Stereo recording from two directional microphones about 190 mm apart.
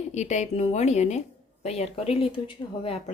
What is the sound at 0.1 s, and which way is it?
Speech, 35° left (ahead or behind).